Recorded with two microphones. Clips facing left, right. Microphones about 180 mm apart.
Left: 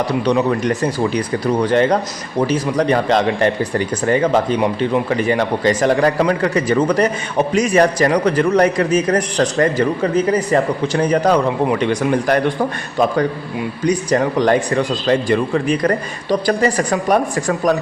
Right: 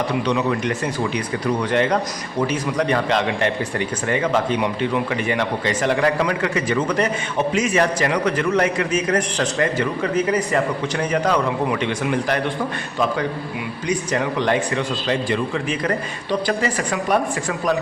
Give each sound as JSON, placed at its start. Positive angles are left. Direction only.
{"t": 0.3, "sound": "speech", "side_deg": 35}
{"t": 13.8, "sound": "speech", "side_deg": 40}